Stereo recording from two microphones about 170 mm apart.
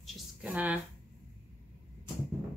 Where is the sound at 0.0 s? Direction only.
5° right (ahead or behind).